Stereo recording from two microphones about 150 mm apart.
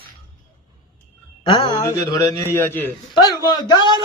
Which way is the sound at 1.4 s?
35° left (ahead or behind).